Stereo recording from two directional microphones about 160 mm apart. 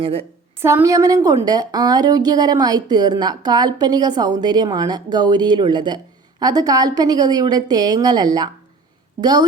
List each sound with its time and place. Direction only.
0.0 s a woman's voice: 40° right (ahead or behind)
0.6 s a woman's voice: 15° right (ahead or behind)